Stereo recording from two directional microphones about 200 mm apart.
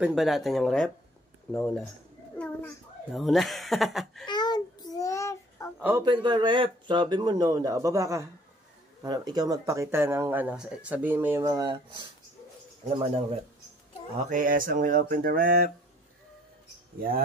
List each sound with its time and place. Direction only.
0.0 s a child's voice: centre (ahead or behind)
4.3 s child singing: 20° left (ahead or behind)
5.8 s speech: 10° right (ahead or behind)
6.0 s speech: 20° right (ahead or behind)
14.1 s speech: 40° right (ahead or behind)